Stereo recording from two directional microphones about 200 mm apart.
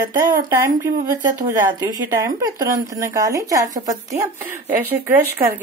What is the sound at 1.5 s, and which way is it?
Speech, 15° right (ahead or behind).